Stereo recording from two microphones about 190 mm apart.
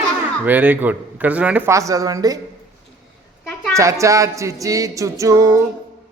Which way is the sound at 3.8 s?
15° right (ahead or behind).